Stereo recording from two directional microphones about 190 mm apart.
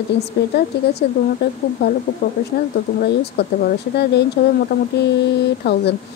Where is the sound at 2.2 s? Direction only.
55° left (ahead or behind).